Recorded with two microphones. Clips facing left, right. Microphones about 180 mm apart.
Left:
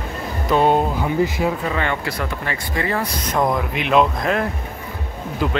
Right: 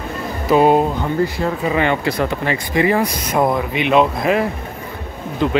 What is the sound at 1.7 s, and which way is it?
Speech, 20° right (ahead or behind).